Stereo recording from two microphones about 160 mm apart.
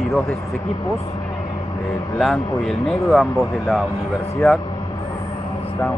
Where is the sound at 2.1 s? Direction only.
5° left (ahead or behind).